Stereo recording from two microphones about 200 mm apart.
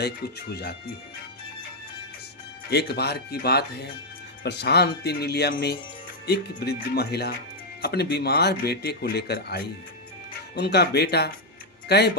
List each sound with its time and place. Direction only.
0.0 s speech: 55° left (ahead or behind)
2.6 s speech: 55° left (ahead or behind)